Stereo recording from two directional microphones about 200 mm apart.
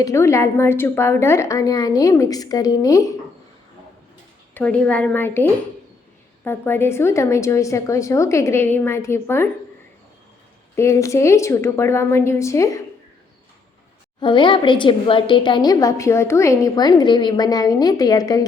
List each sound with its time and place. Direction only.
0.0 s speech: 15° left (ahead or behind)
4.5 s speech: 5° left (ahead or behind)
10.8 s speech: 15° left (ahead or behind)
14.2 s a woman's voice: 25° left (ahead or behind)